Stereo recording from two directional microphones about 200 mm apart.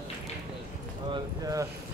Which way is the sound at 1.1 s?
15° right (ahead or behind).